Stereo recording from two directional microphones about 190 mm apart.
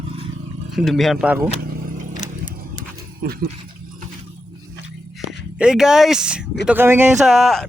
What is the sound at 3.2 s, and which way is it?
Speech, 50° right (ahead or behind).